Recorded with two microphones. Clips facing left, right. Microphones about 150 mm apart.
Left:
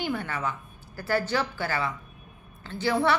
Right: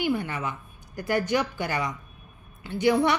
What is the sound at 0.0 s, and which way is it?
A woman's voice, 10° right (ahead or behind).